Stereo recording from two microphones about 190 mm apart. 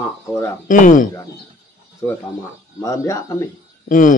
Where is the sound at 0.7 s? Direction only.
45° left (ahead or behind).